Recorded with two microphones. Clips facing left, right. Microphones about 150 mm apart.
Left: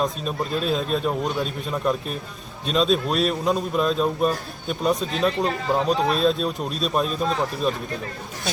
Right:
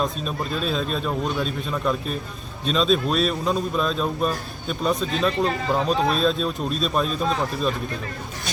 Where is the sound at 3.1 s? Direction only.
10° left (ahead or behind).